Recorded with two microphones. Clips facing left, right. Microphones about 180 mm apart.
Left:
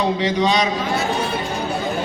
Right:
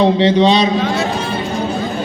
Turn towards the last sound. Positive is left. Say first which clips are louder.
# right 7 dB
turn(degrees=-30)  # may be behind; listen again after turning